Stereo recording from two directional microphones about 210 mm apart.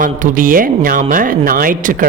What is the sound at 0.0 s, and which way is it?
A man's voice, 40° right (ahead or behind).